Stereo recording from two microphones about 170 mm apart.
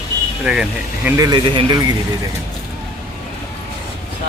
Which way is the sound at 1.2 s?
25° right (ahead or behind).